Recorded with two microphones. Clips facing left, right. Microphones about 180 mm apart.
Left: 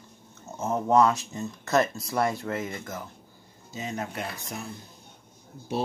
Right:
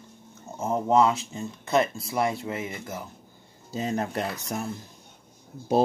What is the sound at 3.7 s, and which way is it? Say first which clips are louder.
Speech: right 6 dB; 35° right (ahead or behind).